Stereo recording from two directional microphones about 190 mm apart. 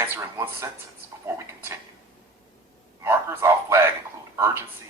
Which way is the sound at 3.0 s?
15° right (ahead or behind).